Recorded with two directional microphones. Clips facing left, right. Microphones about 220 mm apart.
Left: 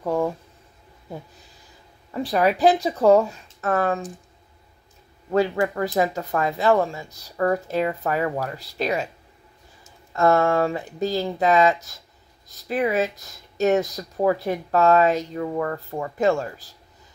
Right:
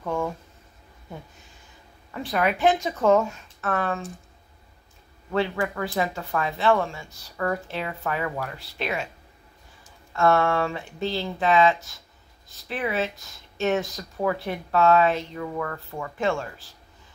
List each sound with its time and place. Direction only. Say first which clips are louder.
0.0 s a sound: left 5 dB; 35° left (ahead or behind)
2.1 s speech: left 4 dB; 35° left (ahead or behind)
5.3 s speech: left 4 dB; 40° left (ahead or behind)
10.1 s speech: left 3 dB; 40° left (ahead or behind)